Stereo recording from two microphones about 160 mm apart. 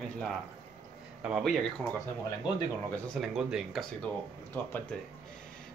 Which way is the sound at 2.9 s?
Centre (ahead or behind).